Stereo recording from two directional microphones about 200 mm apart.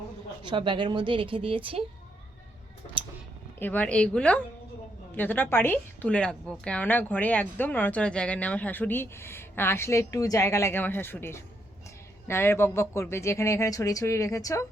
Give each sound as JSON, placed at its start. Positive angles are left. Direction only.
{"t": 0.4, "sound": "speech", "side_deg": -25}
{"t": 3.6, "sound": "a woman's voice", "side_deg": 10}